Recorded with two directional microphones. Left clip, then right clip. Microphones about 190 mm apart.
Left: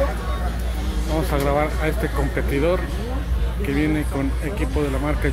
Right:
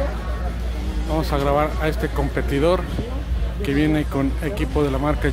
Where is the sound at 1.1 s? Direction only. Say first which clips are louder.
Right 1 dB; 10° right (ahead or behind).